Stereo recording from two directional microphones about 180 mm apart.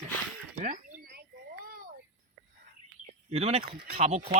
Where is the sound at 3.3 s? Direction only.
35° right (ahead or behind).